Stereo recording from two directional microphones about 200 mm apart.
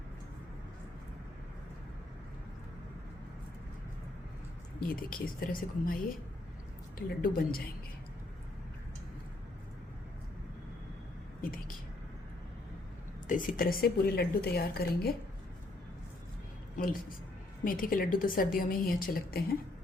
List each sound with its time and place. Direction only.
4.8 s speech: 45° left (ahead or behind)
7.1 s speech: 50° left (ahead or behind)
13.2 s speech: 40° left (ahead or behind)
16.7 s speech: 45° left (ahead or behind)